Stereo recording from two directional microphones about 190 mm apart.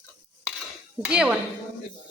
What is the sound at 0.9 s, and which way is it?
Speech, 5° right (ahead or behind).